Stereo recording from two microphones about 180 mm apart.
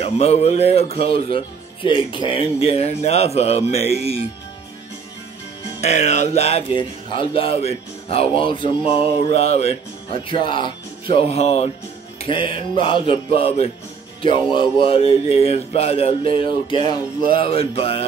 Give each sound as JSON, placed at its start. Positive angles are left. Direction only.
{"t": 0.0, "sound": "speech", "side_deg": 35}
{"t": 5.8, "sound": "speech", "side_deg": 40}